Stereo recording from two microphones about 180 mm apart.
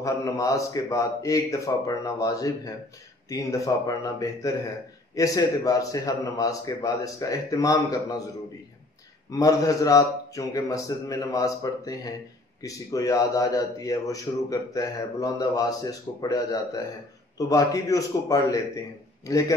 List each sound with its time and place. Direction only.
0.0 s a man's voice: 20° left (ahead or behind)
9.3 s a man's voice: 20° left (ahead or behind)